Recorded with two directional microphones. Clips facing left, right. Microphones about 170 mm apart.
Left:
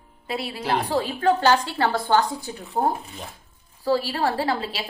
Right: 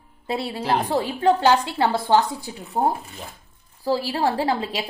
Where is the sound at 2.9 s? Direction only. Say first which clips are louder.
Right 1 dB; centre (ahead or behind).